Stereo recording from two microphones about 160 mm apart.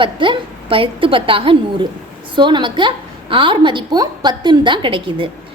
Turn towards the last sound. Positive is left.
turn(degrees=-30)  # may be behind; listen again after turning